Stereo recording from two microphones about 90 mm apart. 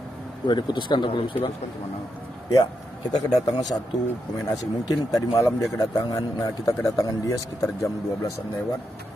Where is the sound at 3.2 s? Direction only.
45° left (ahead or behind).